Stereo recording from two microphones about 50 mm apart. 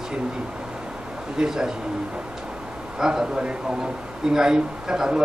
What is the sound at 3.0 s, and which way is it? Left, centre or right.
Speech, centre.